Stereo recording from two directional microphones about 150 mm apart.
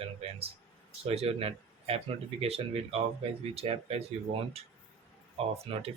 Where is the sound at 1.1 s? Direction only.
40° right (ahead or behind).